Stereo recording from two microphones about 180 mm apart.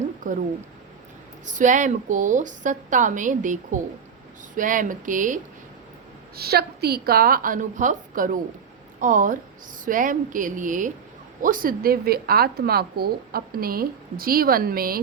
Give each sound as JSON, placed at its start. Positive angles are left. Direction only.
{"t": 0.2, "sound": "a woman's voice", "side_deg": -45}
{"t": 1.5, "sound": "a woman's voice", "side_deg": -45}
{"t": 6.3, "sound": "a woman's voice", "side_deg": -60}